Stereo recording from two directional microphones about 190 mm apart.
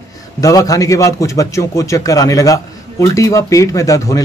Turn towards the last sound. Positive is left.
turn(degrees=15)  # may be behind; listen again after turning